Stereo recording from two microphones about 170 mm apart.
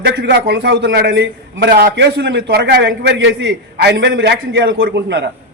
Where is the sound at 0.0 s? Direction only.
85° right.